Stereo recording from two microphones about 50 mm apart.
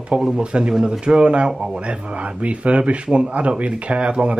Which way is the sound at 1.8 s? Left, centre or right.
Right.